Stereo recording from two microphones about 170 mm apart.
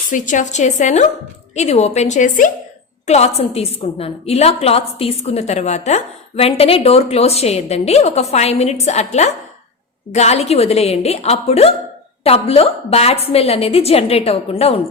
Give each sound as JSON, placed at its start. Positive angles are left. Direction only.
{"t": 0.1, "sound": "a woman's voice", "side_deg": 50}
{"t": 3.1, "sound": "a woman's voice", "side_deg": 40}